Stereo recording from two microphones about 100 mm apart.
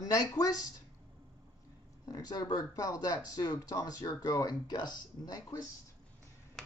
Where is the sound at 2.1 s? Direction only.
40° left (ahead or behind).